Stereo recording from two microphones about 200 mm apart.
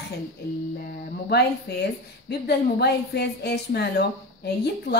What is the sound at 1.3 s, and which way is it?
A woman's voice, 55° left (ahead or behind).